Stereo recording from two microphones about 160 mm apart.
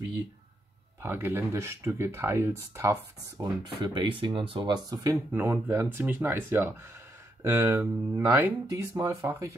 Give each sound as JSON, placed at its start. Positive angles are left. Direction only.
{"t": 1.0, "sound": "speech", "side_deg": -15}
{"t": 3.8, "sound": "speech", "side_deg": -30}
{"t": 5.1, "sound": "speech", "side_deg": -10}